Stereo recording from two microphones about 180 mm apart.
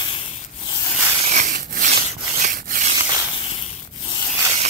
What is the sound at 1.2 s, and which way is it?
Rub, 45° right (ahead or behind).